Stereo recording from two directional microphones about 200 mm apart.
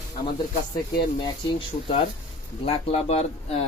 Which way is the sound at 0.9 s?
25° left (ahead or behind).